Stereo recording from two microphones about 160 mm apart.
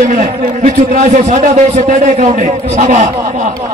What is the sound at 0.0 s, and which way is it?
A man's voice, 50° right (ahead or behind).